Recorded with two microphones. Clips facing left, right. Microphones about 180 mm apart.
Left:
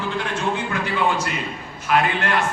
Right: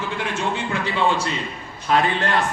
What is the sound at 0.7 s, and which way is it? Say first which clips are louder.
A man's voice: right 3 dB; 30° right (ahead or behind).